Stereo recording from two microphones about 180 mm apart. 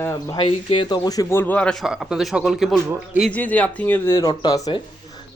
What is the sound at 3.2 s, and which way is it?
Speech, 10° left (ahead or behind).